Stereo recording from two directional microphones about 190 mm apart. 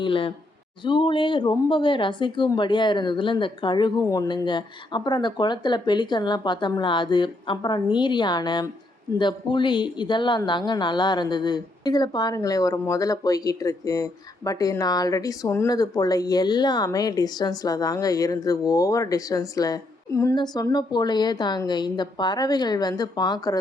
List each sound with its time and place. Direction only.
0.0 s speech: 25° left (ahead or behind)